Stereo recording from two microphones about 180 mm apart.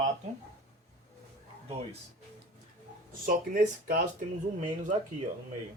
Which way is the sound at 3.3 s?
50° right (ahead or behind).